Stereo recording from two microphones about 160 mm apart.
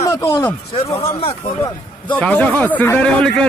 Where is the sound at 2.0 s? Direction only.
10° left (ahead or behind).